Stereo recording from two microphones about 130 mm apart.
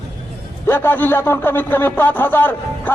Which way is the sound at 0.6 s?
15° left (ahead or behind).